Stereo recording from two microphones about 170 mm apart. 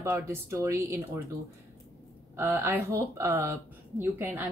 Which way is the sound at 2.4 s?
15° right (ahead or behind).